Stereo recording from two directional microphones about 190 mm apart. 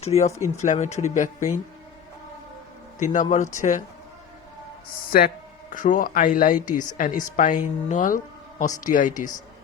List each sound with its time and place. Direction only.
0.1 s speech: 30° left (ahead or behind)
3.0 s speech: 40° left (ahead or behind)
5.7 s speech: 45° left (ahead or behind)